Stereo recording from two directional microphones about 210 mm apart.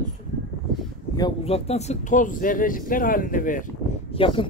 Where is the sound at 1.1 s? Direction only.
25° left (ahead or behind); by 3.6 s 40° left (ahead or behind).